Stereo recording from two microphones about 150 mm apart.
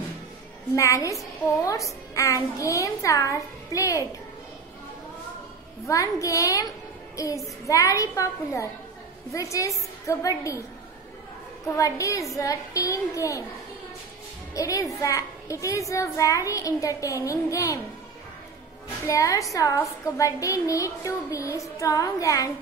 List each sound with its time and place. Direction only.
0.7 s a woman's voice: 20° left (ahead or behind)
5.9 s a woman's voice: 20° left (ahead or behind)
11.7 s a woman's voice: 20° left (ahead or behind)
14.5 s a woman's voice: 20° left (ahead or behind)
19.0 s a woman's voice: 20° left (ahead or behind)